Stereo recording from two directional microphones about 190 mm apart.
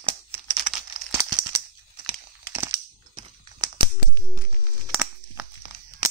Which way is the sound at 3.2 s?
25° right (ahead or behind).